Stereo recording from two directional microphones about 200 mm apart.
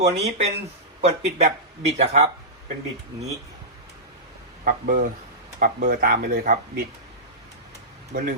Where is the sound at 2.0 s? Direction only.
35° right (ahead or behind).